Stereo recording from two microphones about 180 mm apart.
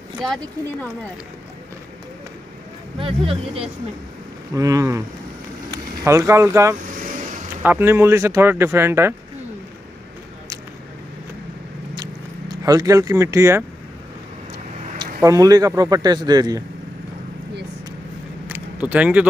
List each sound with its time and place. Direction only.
0.2 s speech: 5° left (ahead or behind)
3.0 s speech: 30° right (ahead or behind)
4.6 s speech: 20° right (ahead or behind)
11.9 s vehicle: 25° right (ahead or behind)
15.2 s speech: 20° right (ahead or behind)
18.5 s keys jangling: 10° right (ahead or behind)